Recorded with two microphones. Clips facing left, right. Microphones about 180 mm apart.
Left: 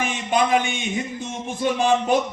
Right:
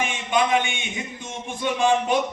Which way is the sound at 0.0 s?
35° left (ahead or behind).